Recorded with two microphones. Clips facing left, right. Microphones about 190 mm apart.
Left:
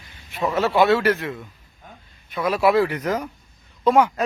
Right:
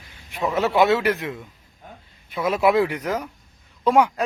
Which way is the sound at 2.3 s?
25° right (ahead or behind).